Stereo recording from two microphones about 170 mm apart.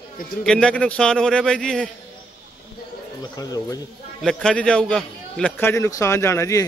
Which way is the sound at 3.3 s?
20° left (ahead or behind).